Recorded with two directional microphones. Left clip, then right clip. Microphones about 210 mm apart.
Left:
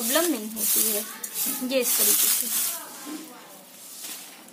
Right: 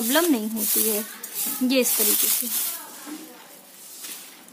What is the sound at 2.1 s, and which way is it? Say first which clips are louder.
Speech: even; 10° left (ahead or behind).